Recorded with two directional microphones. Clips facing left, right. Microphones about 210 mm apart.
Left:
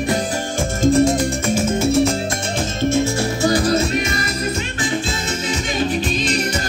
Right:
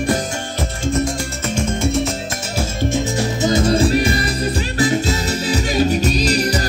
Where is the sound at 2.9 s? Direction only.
20° right (ahead or behind); by 6.6 s 35° right (ahead or behind).